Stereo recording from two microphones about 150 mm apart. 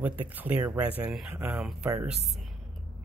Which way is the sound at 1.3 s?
15° right (ahead or behind).